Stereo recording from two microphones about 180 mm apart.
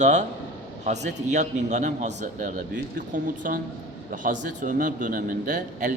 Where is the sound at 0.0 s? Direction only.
40° right (ahead or behind).